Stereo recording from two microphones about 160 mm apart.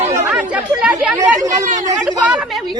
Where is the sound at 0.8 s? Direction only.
10° right (ahead or behind).